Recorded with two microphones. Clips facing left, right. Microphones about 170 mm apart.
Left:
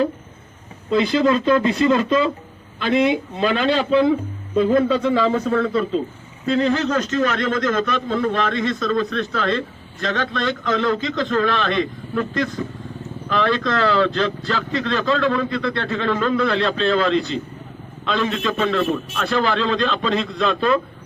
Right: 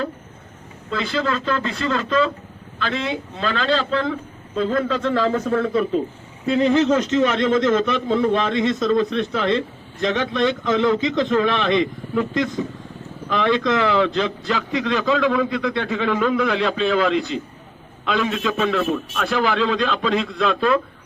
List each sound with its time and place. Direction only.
0.9 s speech: 20° left (ahead or behind)
5.1 s speech: centre (ahead or behind)
5.5 s a man's voice: 15° right (ahead or behind)